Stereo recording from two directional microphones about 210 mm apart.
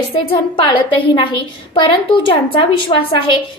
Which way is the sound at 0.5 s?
25° left (ahead or behind).